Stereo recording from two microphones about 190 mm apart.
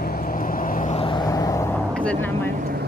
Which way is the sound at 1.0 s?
25° left (ahead or behind).